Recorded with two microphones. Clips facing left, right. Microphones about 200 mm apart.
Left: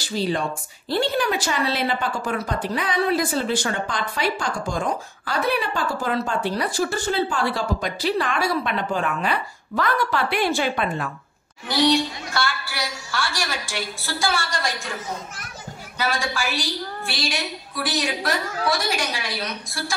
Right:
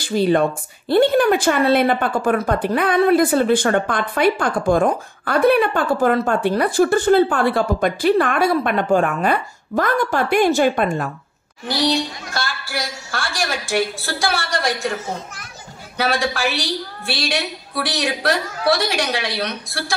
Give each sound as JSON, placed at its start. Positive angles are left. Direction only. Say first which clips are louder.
{"t": 0.0, "sound": "speech", "louder": "right 8 dB", "side_deg": -55}
{"t": 12.4, "sound": "a woman's voice", "louder": "right 1 dB", "side_deg": -50}
{"t": 16.0, "sound": "a woman's voice", "louder": "right 5 dB", "side_deg": -70}